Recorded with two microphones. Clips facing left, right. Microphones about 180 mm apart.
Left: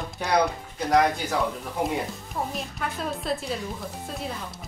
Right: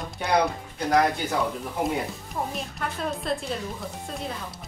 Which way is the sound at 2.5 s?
Centre (ahead or behind).